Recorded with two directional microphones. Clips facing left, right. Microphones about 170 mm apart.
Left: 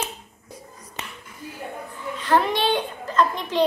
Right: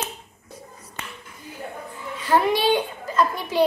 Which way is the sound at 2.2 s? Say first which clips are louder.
Right 1 dB; 10° right (ahead or behind).